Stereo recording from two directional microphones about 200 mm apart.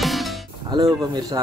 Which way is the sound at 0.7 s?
20° right (ahead or behind).